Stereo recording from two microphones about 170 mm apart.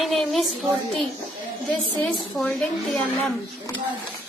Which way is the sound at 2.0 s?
Centre (ahead or behind).